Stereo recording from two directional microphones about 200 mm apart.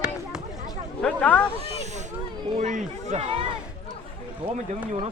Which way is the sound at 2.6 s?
35° right (ahead or behind).